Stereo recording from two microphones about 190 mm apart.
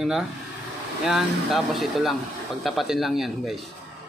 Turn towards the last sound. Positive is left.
turn(degrees=0)  # may be behind; listen again after turning